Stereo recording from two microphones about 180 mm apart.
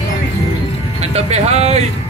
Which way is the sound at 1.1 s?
35° right (ahead or behind).